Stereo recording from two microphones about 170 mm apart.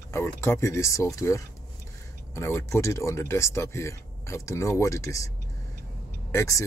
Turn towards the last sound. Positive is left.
turn(degrees=20)  # may be behind; listen again after turning